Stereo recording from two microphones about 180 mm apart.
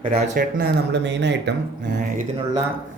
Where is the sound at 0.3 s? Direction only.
65° right (ahead or behind).